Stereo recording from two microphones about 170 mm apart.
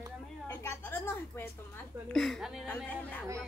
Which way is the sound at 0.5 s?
10° left (ahead or behind).